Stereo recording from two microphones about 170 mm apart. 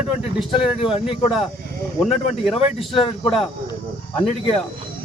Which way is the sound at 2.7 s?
35° left (ahead or behind).